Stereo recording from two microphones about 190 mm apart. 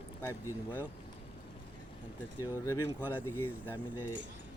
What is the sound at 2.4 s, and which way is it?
Speech, 15° left (ahead or behind).